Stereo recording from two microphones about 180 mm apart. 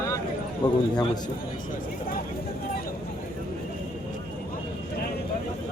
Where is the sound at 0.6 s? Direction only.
25° left (ahead or behind).